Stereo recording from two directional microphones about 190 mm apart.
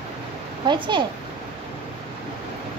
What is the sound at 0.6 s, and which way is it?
Speech, 25° right (ahead or behind).